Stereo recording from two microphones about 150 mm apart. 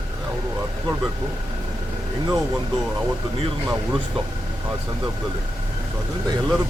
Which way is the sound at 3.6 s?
10° right (ahead or behind).